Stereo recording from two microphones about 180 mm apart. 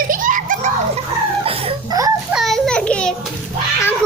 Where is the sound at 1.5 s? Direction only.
30° right (ahead or behind).